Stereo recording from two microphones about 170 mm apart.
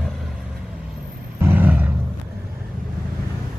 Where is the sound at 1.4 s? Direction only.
10° right (ahead or behind).